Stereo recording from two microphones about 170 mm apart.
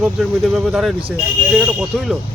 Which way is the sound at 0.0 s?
Centre (ahead or behind).